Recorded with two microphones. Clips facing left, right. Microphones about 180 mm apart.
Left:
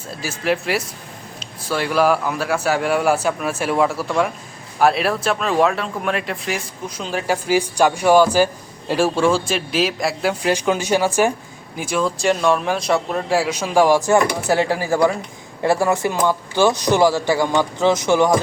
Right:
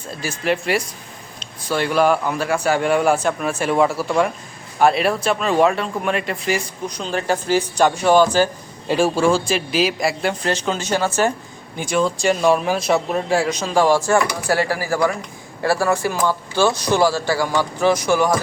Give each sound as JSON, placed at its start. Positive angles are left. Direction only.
{"t": 0.1, "sound": "speech", "side_deg": 0}
{"t": 10.5, "sound": "speech", "side_deg": 10}